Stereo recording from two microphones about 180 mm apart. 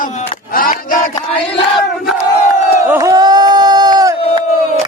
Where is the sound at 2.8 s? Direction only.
20° right (ahead or behind).